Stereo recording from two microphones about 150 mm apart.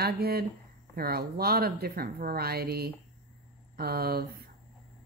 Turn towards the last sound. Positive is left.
turn(degrees=-90)